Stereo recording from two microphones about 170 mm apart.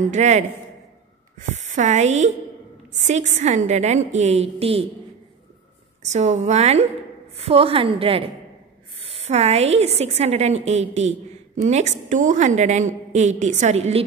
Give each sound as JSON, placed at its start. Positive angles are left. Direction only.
{"t": 0.0, "sound": "a woman's voice", "side_deg": -45}
{"t": 1.5, "sound": "a woman's voice", "side_deg": -45}
{"t": 6.1, "sound": "a woman's voice", "side_deg": -40}